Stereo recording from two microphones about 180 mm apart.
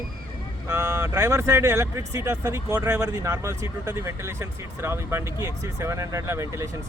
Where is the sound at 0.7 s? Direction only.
15° right (ahead or behind).